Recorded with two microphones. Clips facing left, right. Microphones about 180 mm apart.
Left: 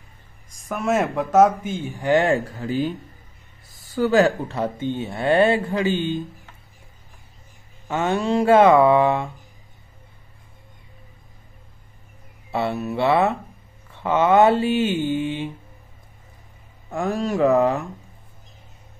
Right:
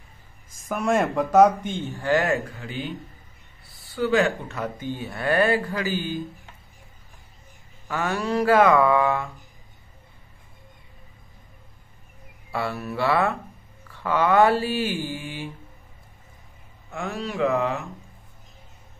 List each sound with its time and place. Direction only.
0.5 s speech: centre (ahead or behind); by 6.2 s 25° left (ahead or behind)
7.9 s speech: 25° left (ahead or behind)
12.4 s speech: 25° left (ahead or behind)
16.9 s mantra: 40° left (ahead or behind)